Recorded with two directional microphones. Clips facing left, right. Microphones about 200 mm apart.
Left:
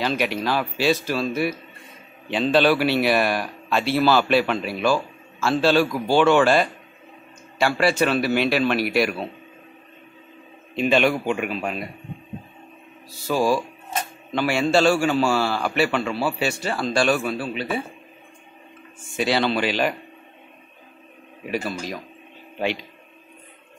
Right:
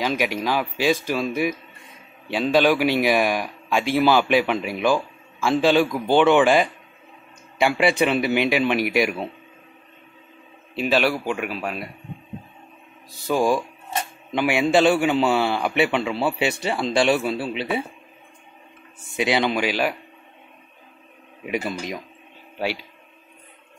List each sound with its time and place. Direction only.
0.0 s speech: 10° right (ahead or behind)
10.7 s a man's voice: 5° right (ahead or behind)
13.3 s a man's voice: 15° right (ahead or behind)
19.0 s speech: 20° right (ahead or behind)
21.5 s a man's voice: 20° right (ahead or behind)